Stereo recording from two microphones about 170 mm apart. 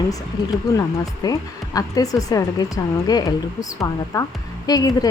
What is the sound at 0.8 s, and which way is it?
Speech, 20° left (ahead or behind).